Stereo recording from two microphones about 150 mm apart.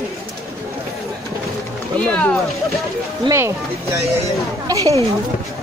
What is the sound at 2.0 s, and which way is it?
Speech, 10° left (ahead or behind).